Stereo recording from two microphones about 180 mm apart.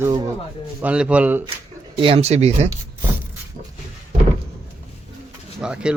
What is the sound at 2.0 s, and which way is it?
Speech, 30° right (ahead or behind).